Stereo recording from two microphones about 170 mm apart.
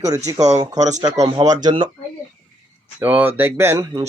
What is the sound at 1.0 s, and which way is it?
Speech, 20° right (ahead or behind).